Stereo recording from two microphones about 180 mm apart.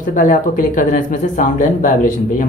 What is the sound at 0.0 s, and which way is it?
Speech, 45° left (ahead or behind).